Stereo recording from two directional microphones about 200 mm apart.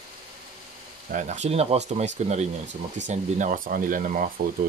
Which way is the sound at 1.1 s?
40° right (ahead or behind).